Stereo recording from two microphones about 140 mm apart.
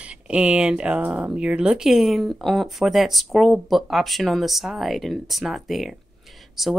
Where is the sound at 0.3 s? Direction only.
10° right (ahead or behind).